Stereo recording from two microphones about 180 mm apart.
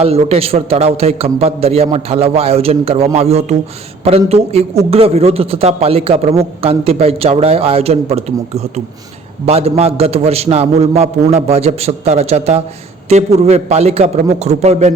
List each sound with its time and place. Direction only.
0.0 s speech: 35° right (ahead or behind)